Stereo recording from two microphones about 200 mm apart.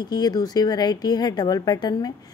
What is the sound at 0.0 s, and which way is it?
A woman's voice, 20° left (ahead or behind).